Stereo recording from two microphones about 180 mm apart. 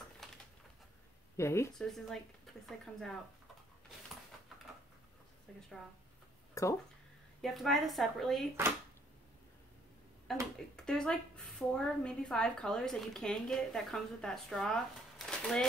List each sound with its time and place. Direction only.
0.2 s a sound: centre (ahead or behind)
1.3 s speech: 15° left (ahead or behind)
1.8 s a woman's voice: centre (ahead or behind)
5.5 s a woman's voice: centre (ahead or behind)
6.5 s speech: 20° left (ahead or behind)
7.4 s a woman's voice: centre (ahead or behind)
10.3 s a woman's voice: centre (ahead or behind)